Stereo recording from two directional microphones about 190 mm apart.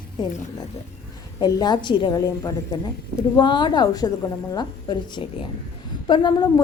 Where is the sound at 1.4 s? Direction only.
20° left (ahead or behind).